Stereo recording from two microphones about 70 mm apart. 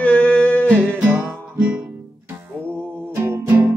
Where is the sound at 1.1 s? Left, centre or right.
Right.